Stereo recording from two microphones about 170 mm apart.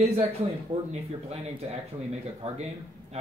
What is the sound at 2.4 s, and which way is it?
Speech, 35° right (ahead or behind).